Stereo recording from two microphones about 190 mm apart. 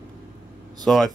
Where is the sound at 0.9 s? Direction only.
Centre (ahead or behind).